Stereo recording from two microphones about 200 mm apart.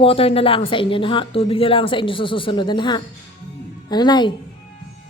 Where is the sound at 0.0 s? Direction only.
30° left (ahead or behind).